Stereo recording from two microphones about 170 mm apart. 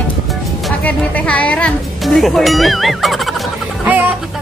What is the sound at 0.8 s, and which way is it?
Speech, 10° left (ahead or behind).